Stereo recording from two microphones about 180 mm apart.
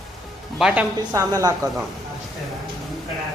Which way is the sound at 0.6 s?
5° right (ahead or behind).